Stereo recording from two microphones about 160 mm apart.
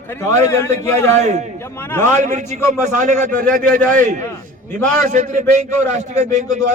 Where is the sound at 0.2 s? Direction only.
15° left (ahead or behind).